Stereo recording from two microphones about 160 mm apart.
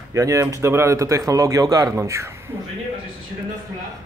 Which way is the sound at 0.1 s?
20° right (ahead or behind).